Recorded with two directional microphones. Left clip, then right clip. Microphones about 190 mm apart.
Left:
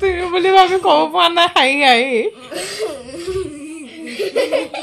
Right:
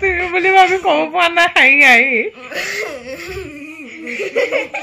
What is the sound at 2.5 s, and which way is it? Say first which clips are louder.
Laughter: right 2 dB; 25° right (ahead or behind).